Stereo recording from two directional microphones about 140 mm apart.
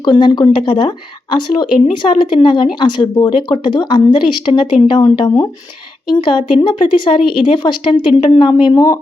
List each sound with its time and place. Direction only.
0.0 s speech: 30° left (ahead or behind)